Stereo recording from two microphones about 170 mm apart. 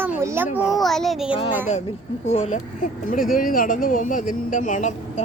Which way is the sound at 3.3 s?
55° left (ahead or behind).